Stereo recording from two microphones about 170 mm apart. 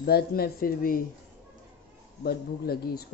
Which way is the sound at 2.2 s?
65° left (ahead or behind).